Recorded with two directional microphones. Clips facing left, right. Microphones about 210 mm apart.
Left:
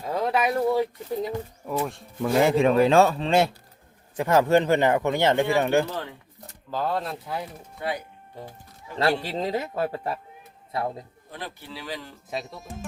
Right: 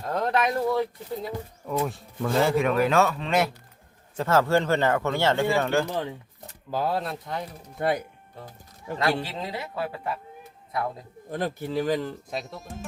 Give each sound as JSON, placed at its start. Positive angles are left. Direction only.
{"t": 0.0, "sound": "speech", "side_deg": 5}
{"t": 2.3, "sound": "speech", "side_deg": 20}
{"t": 4.2, "sound": "speech", "side_deg": 15}
{"t": 5.9, "sound": "speech", "side_deg": -20}
{"t": 6.7, "sound": "speech", "side_deg": -10}
{"t": 7.8, "sound": "speech", "side_deg": -50}
{"t": 9.0, "sound": "a man's voice", "side_deg": 35}
{"t": 10.7, "sound": "speech", "side_deg": 25}
{"t": 11.3, "sound": "speech", "side_deg": -45}
{"t": 12.3, "sound": "speech", "side_deg": 0}